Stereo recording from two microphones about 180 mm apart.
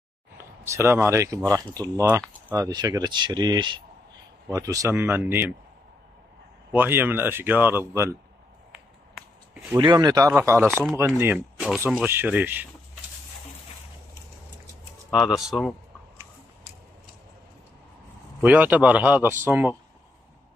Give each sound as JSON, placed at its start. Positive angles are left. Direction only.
{"t": 0.7, "sound": "speech", "side_deg": -15}
{"t": 6.7, "sound": "speech", "side_deg": -10}
{"t": 8.7, "sound": "a sound", "side_deg": -5}
{"t": 9.8, "sound": "speech", "side_deg": -20}
{"t": 11.3, "sound": "speech", "side_deg": 0}
{"t": 15.0, "sound": "speech", "side_deg": 0}
{"t": 18.4, "sound": "speech", "side_deg": -10}